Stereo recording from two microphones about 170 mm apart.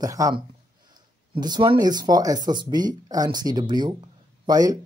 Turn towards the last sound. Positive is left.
turn(degrees=-20)  # may be behind; listen again after turning